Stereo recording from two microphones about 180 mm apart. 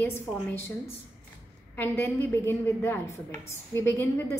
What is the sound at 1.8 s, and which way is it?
A woman's voice, 10° left (ahead or behind).